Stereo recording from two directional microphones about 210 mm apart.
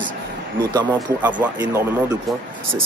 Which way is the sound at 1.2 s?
5° right (ahead or behind).